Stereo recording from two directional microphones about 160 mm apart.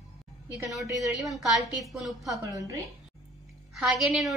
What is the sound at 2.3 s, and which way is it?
Speech, 20° right (ahead or behind).